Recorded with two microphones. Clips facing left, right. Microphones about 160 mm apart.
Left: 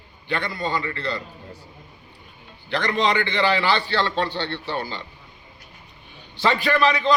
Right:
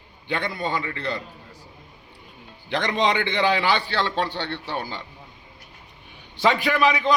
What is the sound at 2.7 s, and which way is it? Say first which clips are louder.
A man's voice: even; 20° right (ahead or behind).